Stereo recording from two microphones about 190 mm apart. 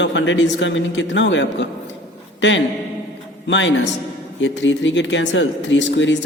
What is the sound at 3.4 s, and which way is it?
A man's voice, 75° left (ahead or behind).